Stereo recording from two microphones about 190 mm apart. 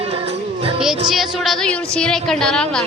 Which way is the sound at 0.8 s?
Centre (ahead or behind).